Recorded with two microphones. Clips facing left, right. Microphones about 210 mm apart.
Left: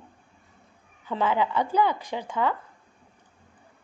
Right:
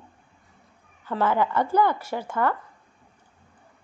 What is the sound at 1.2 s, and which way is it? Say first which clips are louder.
A woman's voice: right 2 dB; 15° left (ahead or behind).